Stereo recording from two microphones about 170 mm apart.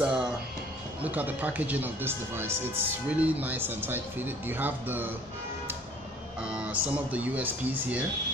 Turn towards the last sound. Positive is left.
turn(degrees=-10)  # may be behind; listen again after turning